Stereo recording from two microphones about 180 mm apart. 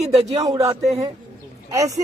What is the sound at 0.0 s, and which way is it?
Speech, 40° right (ahead or behind).